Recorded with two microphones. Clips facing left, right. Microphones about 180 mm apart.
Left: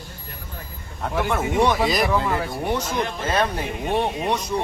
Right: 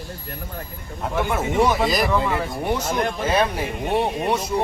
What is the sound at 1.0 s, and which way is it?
Speech, centre (ahead or behind).